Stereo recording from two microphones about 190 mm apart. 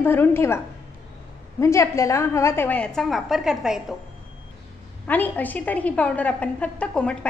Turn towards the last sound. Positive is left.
turn(degrees=5)  # may be behind; listen again after turning